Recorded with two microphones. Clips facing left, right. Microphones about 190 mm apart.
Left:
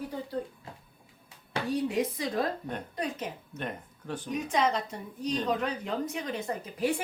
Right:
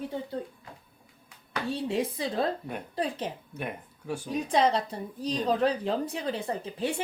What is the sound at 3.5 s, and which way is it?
Speech, 10° right (ahead or behind).